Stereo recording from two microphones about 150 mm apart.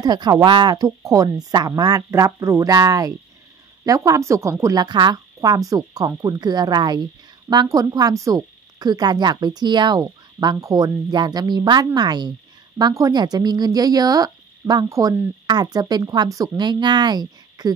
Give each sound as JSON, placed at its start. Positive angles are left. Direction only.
{"t": 0.0, "sound": "speech", "side_deg": -25}